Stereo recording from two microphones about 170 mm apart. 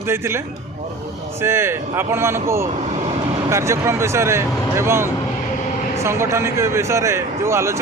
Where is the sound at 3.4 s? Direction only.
15° right (ahead or behind).